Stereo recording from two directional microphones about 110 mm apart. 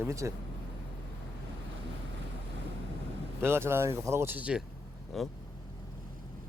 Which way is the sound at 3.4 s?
20° right (ahead or behind).